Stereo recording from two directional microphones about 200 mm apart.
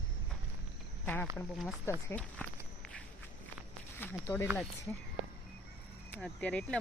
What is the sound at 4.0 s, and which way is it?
Speech, 10° left (ahead or behind).